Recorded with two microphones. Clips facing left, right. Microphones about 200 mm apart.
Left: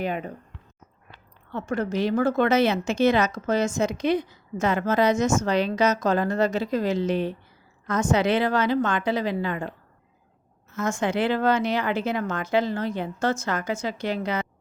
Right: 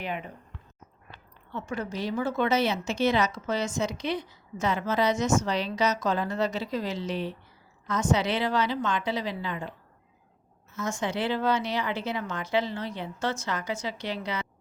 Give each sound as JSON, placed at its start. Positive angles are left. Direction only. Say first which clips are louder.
{"t": 0.0, "sound": "speech", "louder": "left 6 dB", "side_deg": 45}
{"t": 2.1, "sound": "speech", "louder": "left 5 dB", "side_deg": 50}
{"t": 10.8, "sound": "speech", "louder": "left 5 dB", "side_deg": 50}